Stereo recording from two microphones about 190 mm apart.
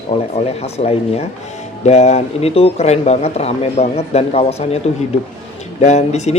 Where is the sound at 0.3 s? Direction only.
35° left (ahead or behind).